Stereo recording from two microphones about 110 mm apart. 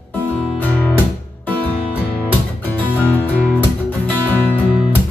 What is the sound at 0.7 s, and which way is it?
Music, 15° left (ahead or behind).